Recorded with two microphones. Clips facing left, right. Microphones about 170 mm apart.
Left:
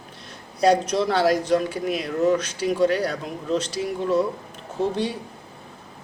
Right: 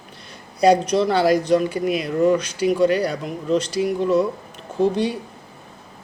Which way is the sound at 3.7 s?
65° right (ahead or behind).